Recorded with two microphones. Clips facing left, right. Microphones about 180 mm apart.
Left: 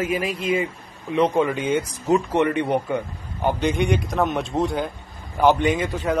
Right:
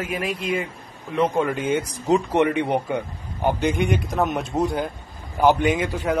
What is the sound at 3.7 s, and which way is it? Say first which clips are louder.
A man's voice: left 1 dB; centre (ahead or behind).